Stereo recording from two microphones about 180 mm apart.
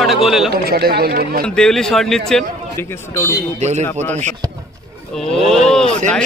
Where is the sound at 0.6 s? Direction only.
60° right (ahead or behind).